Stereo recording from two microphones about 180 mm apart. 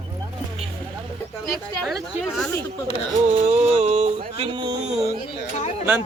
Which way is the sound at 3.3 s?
35° right (ahead or behind).